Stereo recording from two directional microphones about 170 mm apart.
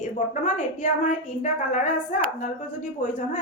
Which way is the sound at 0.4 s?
45° left (ahead or behind).